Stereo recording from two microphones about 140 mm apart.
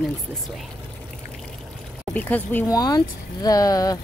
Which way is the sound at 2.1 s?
10° left (ahead or behind).